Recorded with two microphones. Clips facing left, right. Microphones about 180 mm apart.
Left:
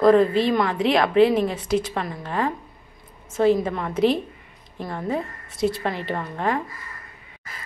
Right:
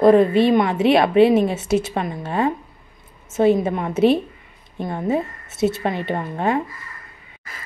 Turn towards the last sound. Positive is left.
turn(degrees=-25)  # may be behind; listen again after turning